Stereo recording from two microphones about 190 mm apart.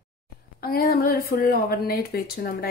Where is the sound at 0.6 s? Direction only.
50° left (ahead or behind).